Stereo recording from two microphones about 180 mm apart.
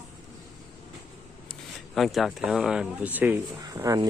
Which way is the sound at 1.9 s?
Centre (ahead or behind).